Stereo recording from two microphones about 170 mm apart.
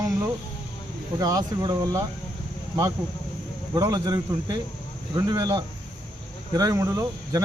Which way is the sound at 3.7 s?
20° right (ahead or behind).